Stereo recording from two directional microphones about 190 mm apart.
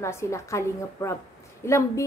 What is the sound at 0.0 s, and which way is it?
A woman's voice, 15° left (ahead or behind).